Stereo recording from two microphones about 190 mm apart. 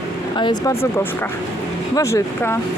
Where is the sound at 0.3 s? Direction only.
25° left (ahead or behind).